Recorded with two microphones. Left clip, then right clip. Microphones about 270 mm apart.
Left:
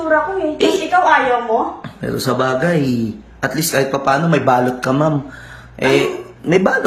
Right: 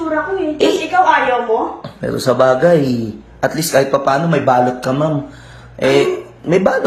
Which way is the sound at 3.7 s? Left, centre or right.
Left.